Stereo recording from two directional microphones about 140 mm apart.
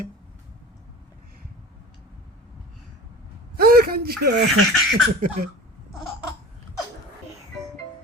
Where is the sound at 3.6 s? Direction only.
90° right.